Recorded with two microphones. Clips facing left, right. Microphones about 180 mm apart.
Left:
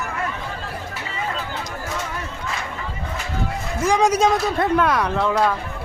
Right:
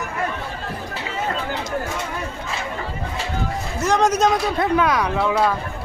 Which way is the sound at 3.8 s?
10° left (ahead or behind).